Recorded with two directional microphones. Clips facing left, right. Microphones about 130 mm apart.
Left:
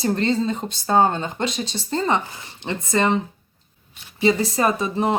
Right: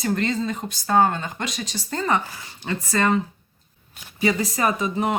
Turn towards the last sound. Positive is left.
turn(degrees=30)  # may be behind; listen again after turning